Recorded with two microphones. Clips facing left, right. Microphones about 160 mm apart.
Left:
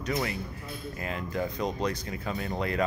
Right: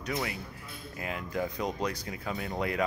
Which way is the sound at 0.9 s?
10° right (ahead or behind).